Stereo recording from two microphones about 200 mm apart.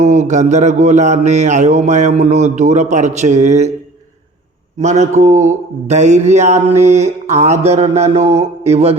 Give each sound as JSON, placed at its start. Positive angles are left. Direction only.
{"t": 0.0, "sound": "mantra", "side_deg": -35}
{"t": 4.8, "sound": "mantra", "side_deg": -35}